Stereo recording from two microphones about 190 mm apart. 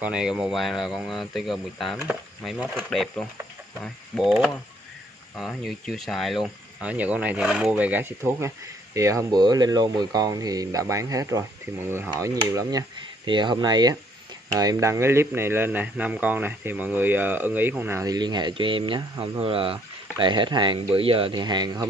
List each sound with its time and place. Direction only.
0.0 s speech: 5° right (ahead or behind)
5.4 s speech: centre (ahead or behind); by 21.8 s 20° right (ahead or behind)